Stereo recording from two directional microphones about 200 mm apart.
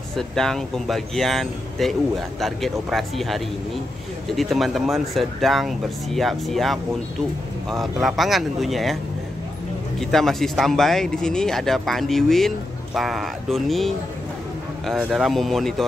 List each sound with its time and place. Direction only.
0.1 s speech: centre (ahead or behind)
9.9 s speech: centre (ahead or behind)